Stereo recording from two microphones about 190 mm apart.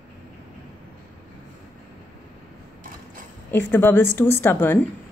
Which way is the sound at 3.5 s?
10° left (ahead or behind).